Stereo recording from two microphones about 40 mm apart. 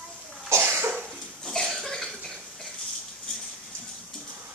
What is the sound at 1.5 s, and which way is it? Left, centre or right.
Cough, centre.